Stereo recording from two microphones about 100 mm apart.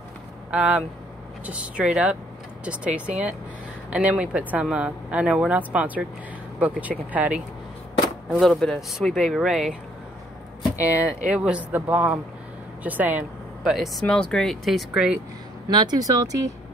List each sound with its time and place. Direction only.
0.5 s a woman's voice: 10° right (ahead or behind)
7.1 s a woman's voice: 15° right (ahead or behind)
8.3 s speech: 5° left (ahead or behind)
11.1 s a woman's voice: 10° right (ahead or behind)
13.7 s speech: 5° right (ahead or behind)
14.0 s speech: 10° left (ahead or behind)
15.7 s speech: 45° right (ahead or behind)